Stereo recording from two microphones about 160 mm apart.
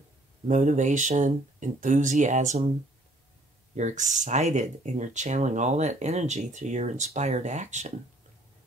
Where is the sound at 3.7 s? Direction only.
50° right (ahead or behind).